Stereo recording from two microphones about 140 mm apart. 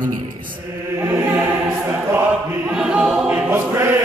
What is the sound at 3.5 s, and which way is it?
Choir, 20° right (ahead or behind).